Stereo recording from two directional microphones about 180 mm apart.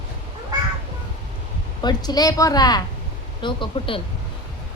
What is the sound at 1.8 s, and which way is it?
A woman's voice, 20° left (ahead or behind).